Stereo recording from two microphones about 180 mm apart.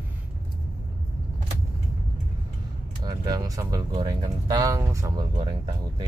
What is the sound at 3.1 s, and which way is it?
Speech, 20° right (ahead or behind).